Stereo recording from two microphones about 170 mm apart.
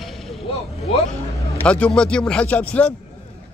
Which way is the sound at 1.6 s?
5° left (ahead or behind).